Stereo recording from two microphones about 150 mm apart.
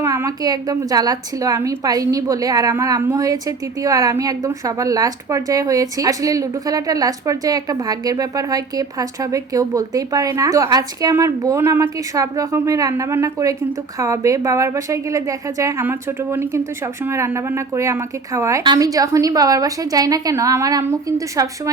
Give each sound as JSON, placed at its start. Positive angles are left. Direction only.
{"t": 0.0, "sound": "a woman's voice", "side_deg": -20}